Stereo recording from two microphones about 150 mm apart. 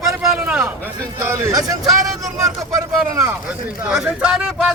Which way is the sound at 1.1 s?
20° right (ahead or behind).